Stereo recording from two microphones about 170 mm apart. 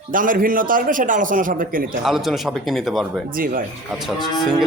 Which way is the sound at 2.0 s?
Centre (ahead or behind).